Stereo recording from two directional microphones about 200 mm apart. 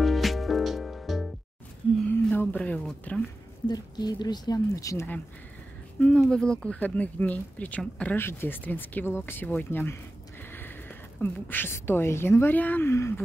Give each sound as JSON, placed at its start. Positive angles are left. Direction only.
{"t": 0.0, "sound": "music", "side_deg": 0}
{"t": 2.0, "sound": "a sound", "side_deg": 10}
{"t": 3.6, "sound": "speech", "side_deg": 20}